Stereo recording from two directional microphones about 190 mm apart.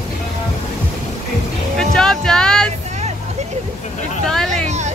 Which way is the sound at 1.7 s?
Centre (ahead or behind).